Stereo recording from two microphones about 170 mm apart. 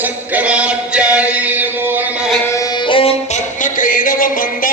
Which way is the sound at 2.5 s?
25° left (ahead or behind).